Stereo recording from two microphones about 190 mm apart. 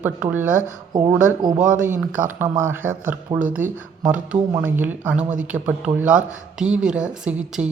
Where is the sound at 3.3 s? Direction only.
25° right (ahead or behind).